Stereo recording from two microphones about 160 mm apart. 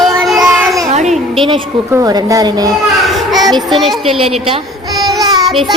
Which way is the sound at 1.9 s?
25° right (ahead or behind).